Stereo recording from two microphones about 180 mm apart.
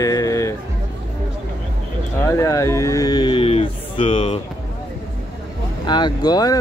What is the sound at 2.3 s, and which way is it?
Speech, 15° left (ahead or behind).